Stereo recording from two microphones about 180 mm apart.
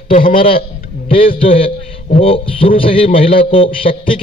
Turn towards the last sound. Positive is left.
turn(degrees=30)  # may be behind; listen again after turning